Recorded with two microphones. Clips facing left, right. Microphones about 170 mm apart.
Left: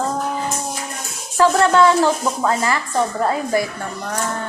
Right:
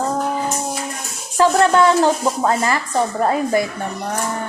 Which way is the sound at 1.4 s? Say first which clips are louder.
Even; 15° right (ahead or behind).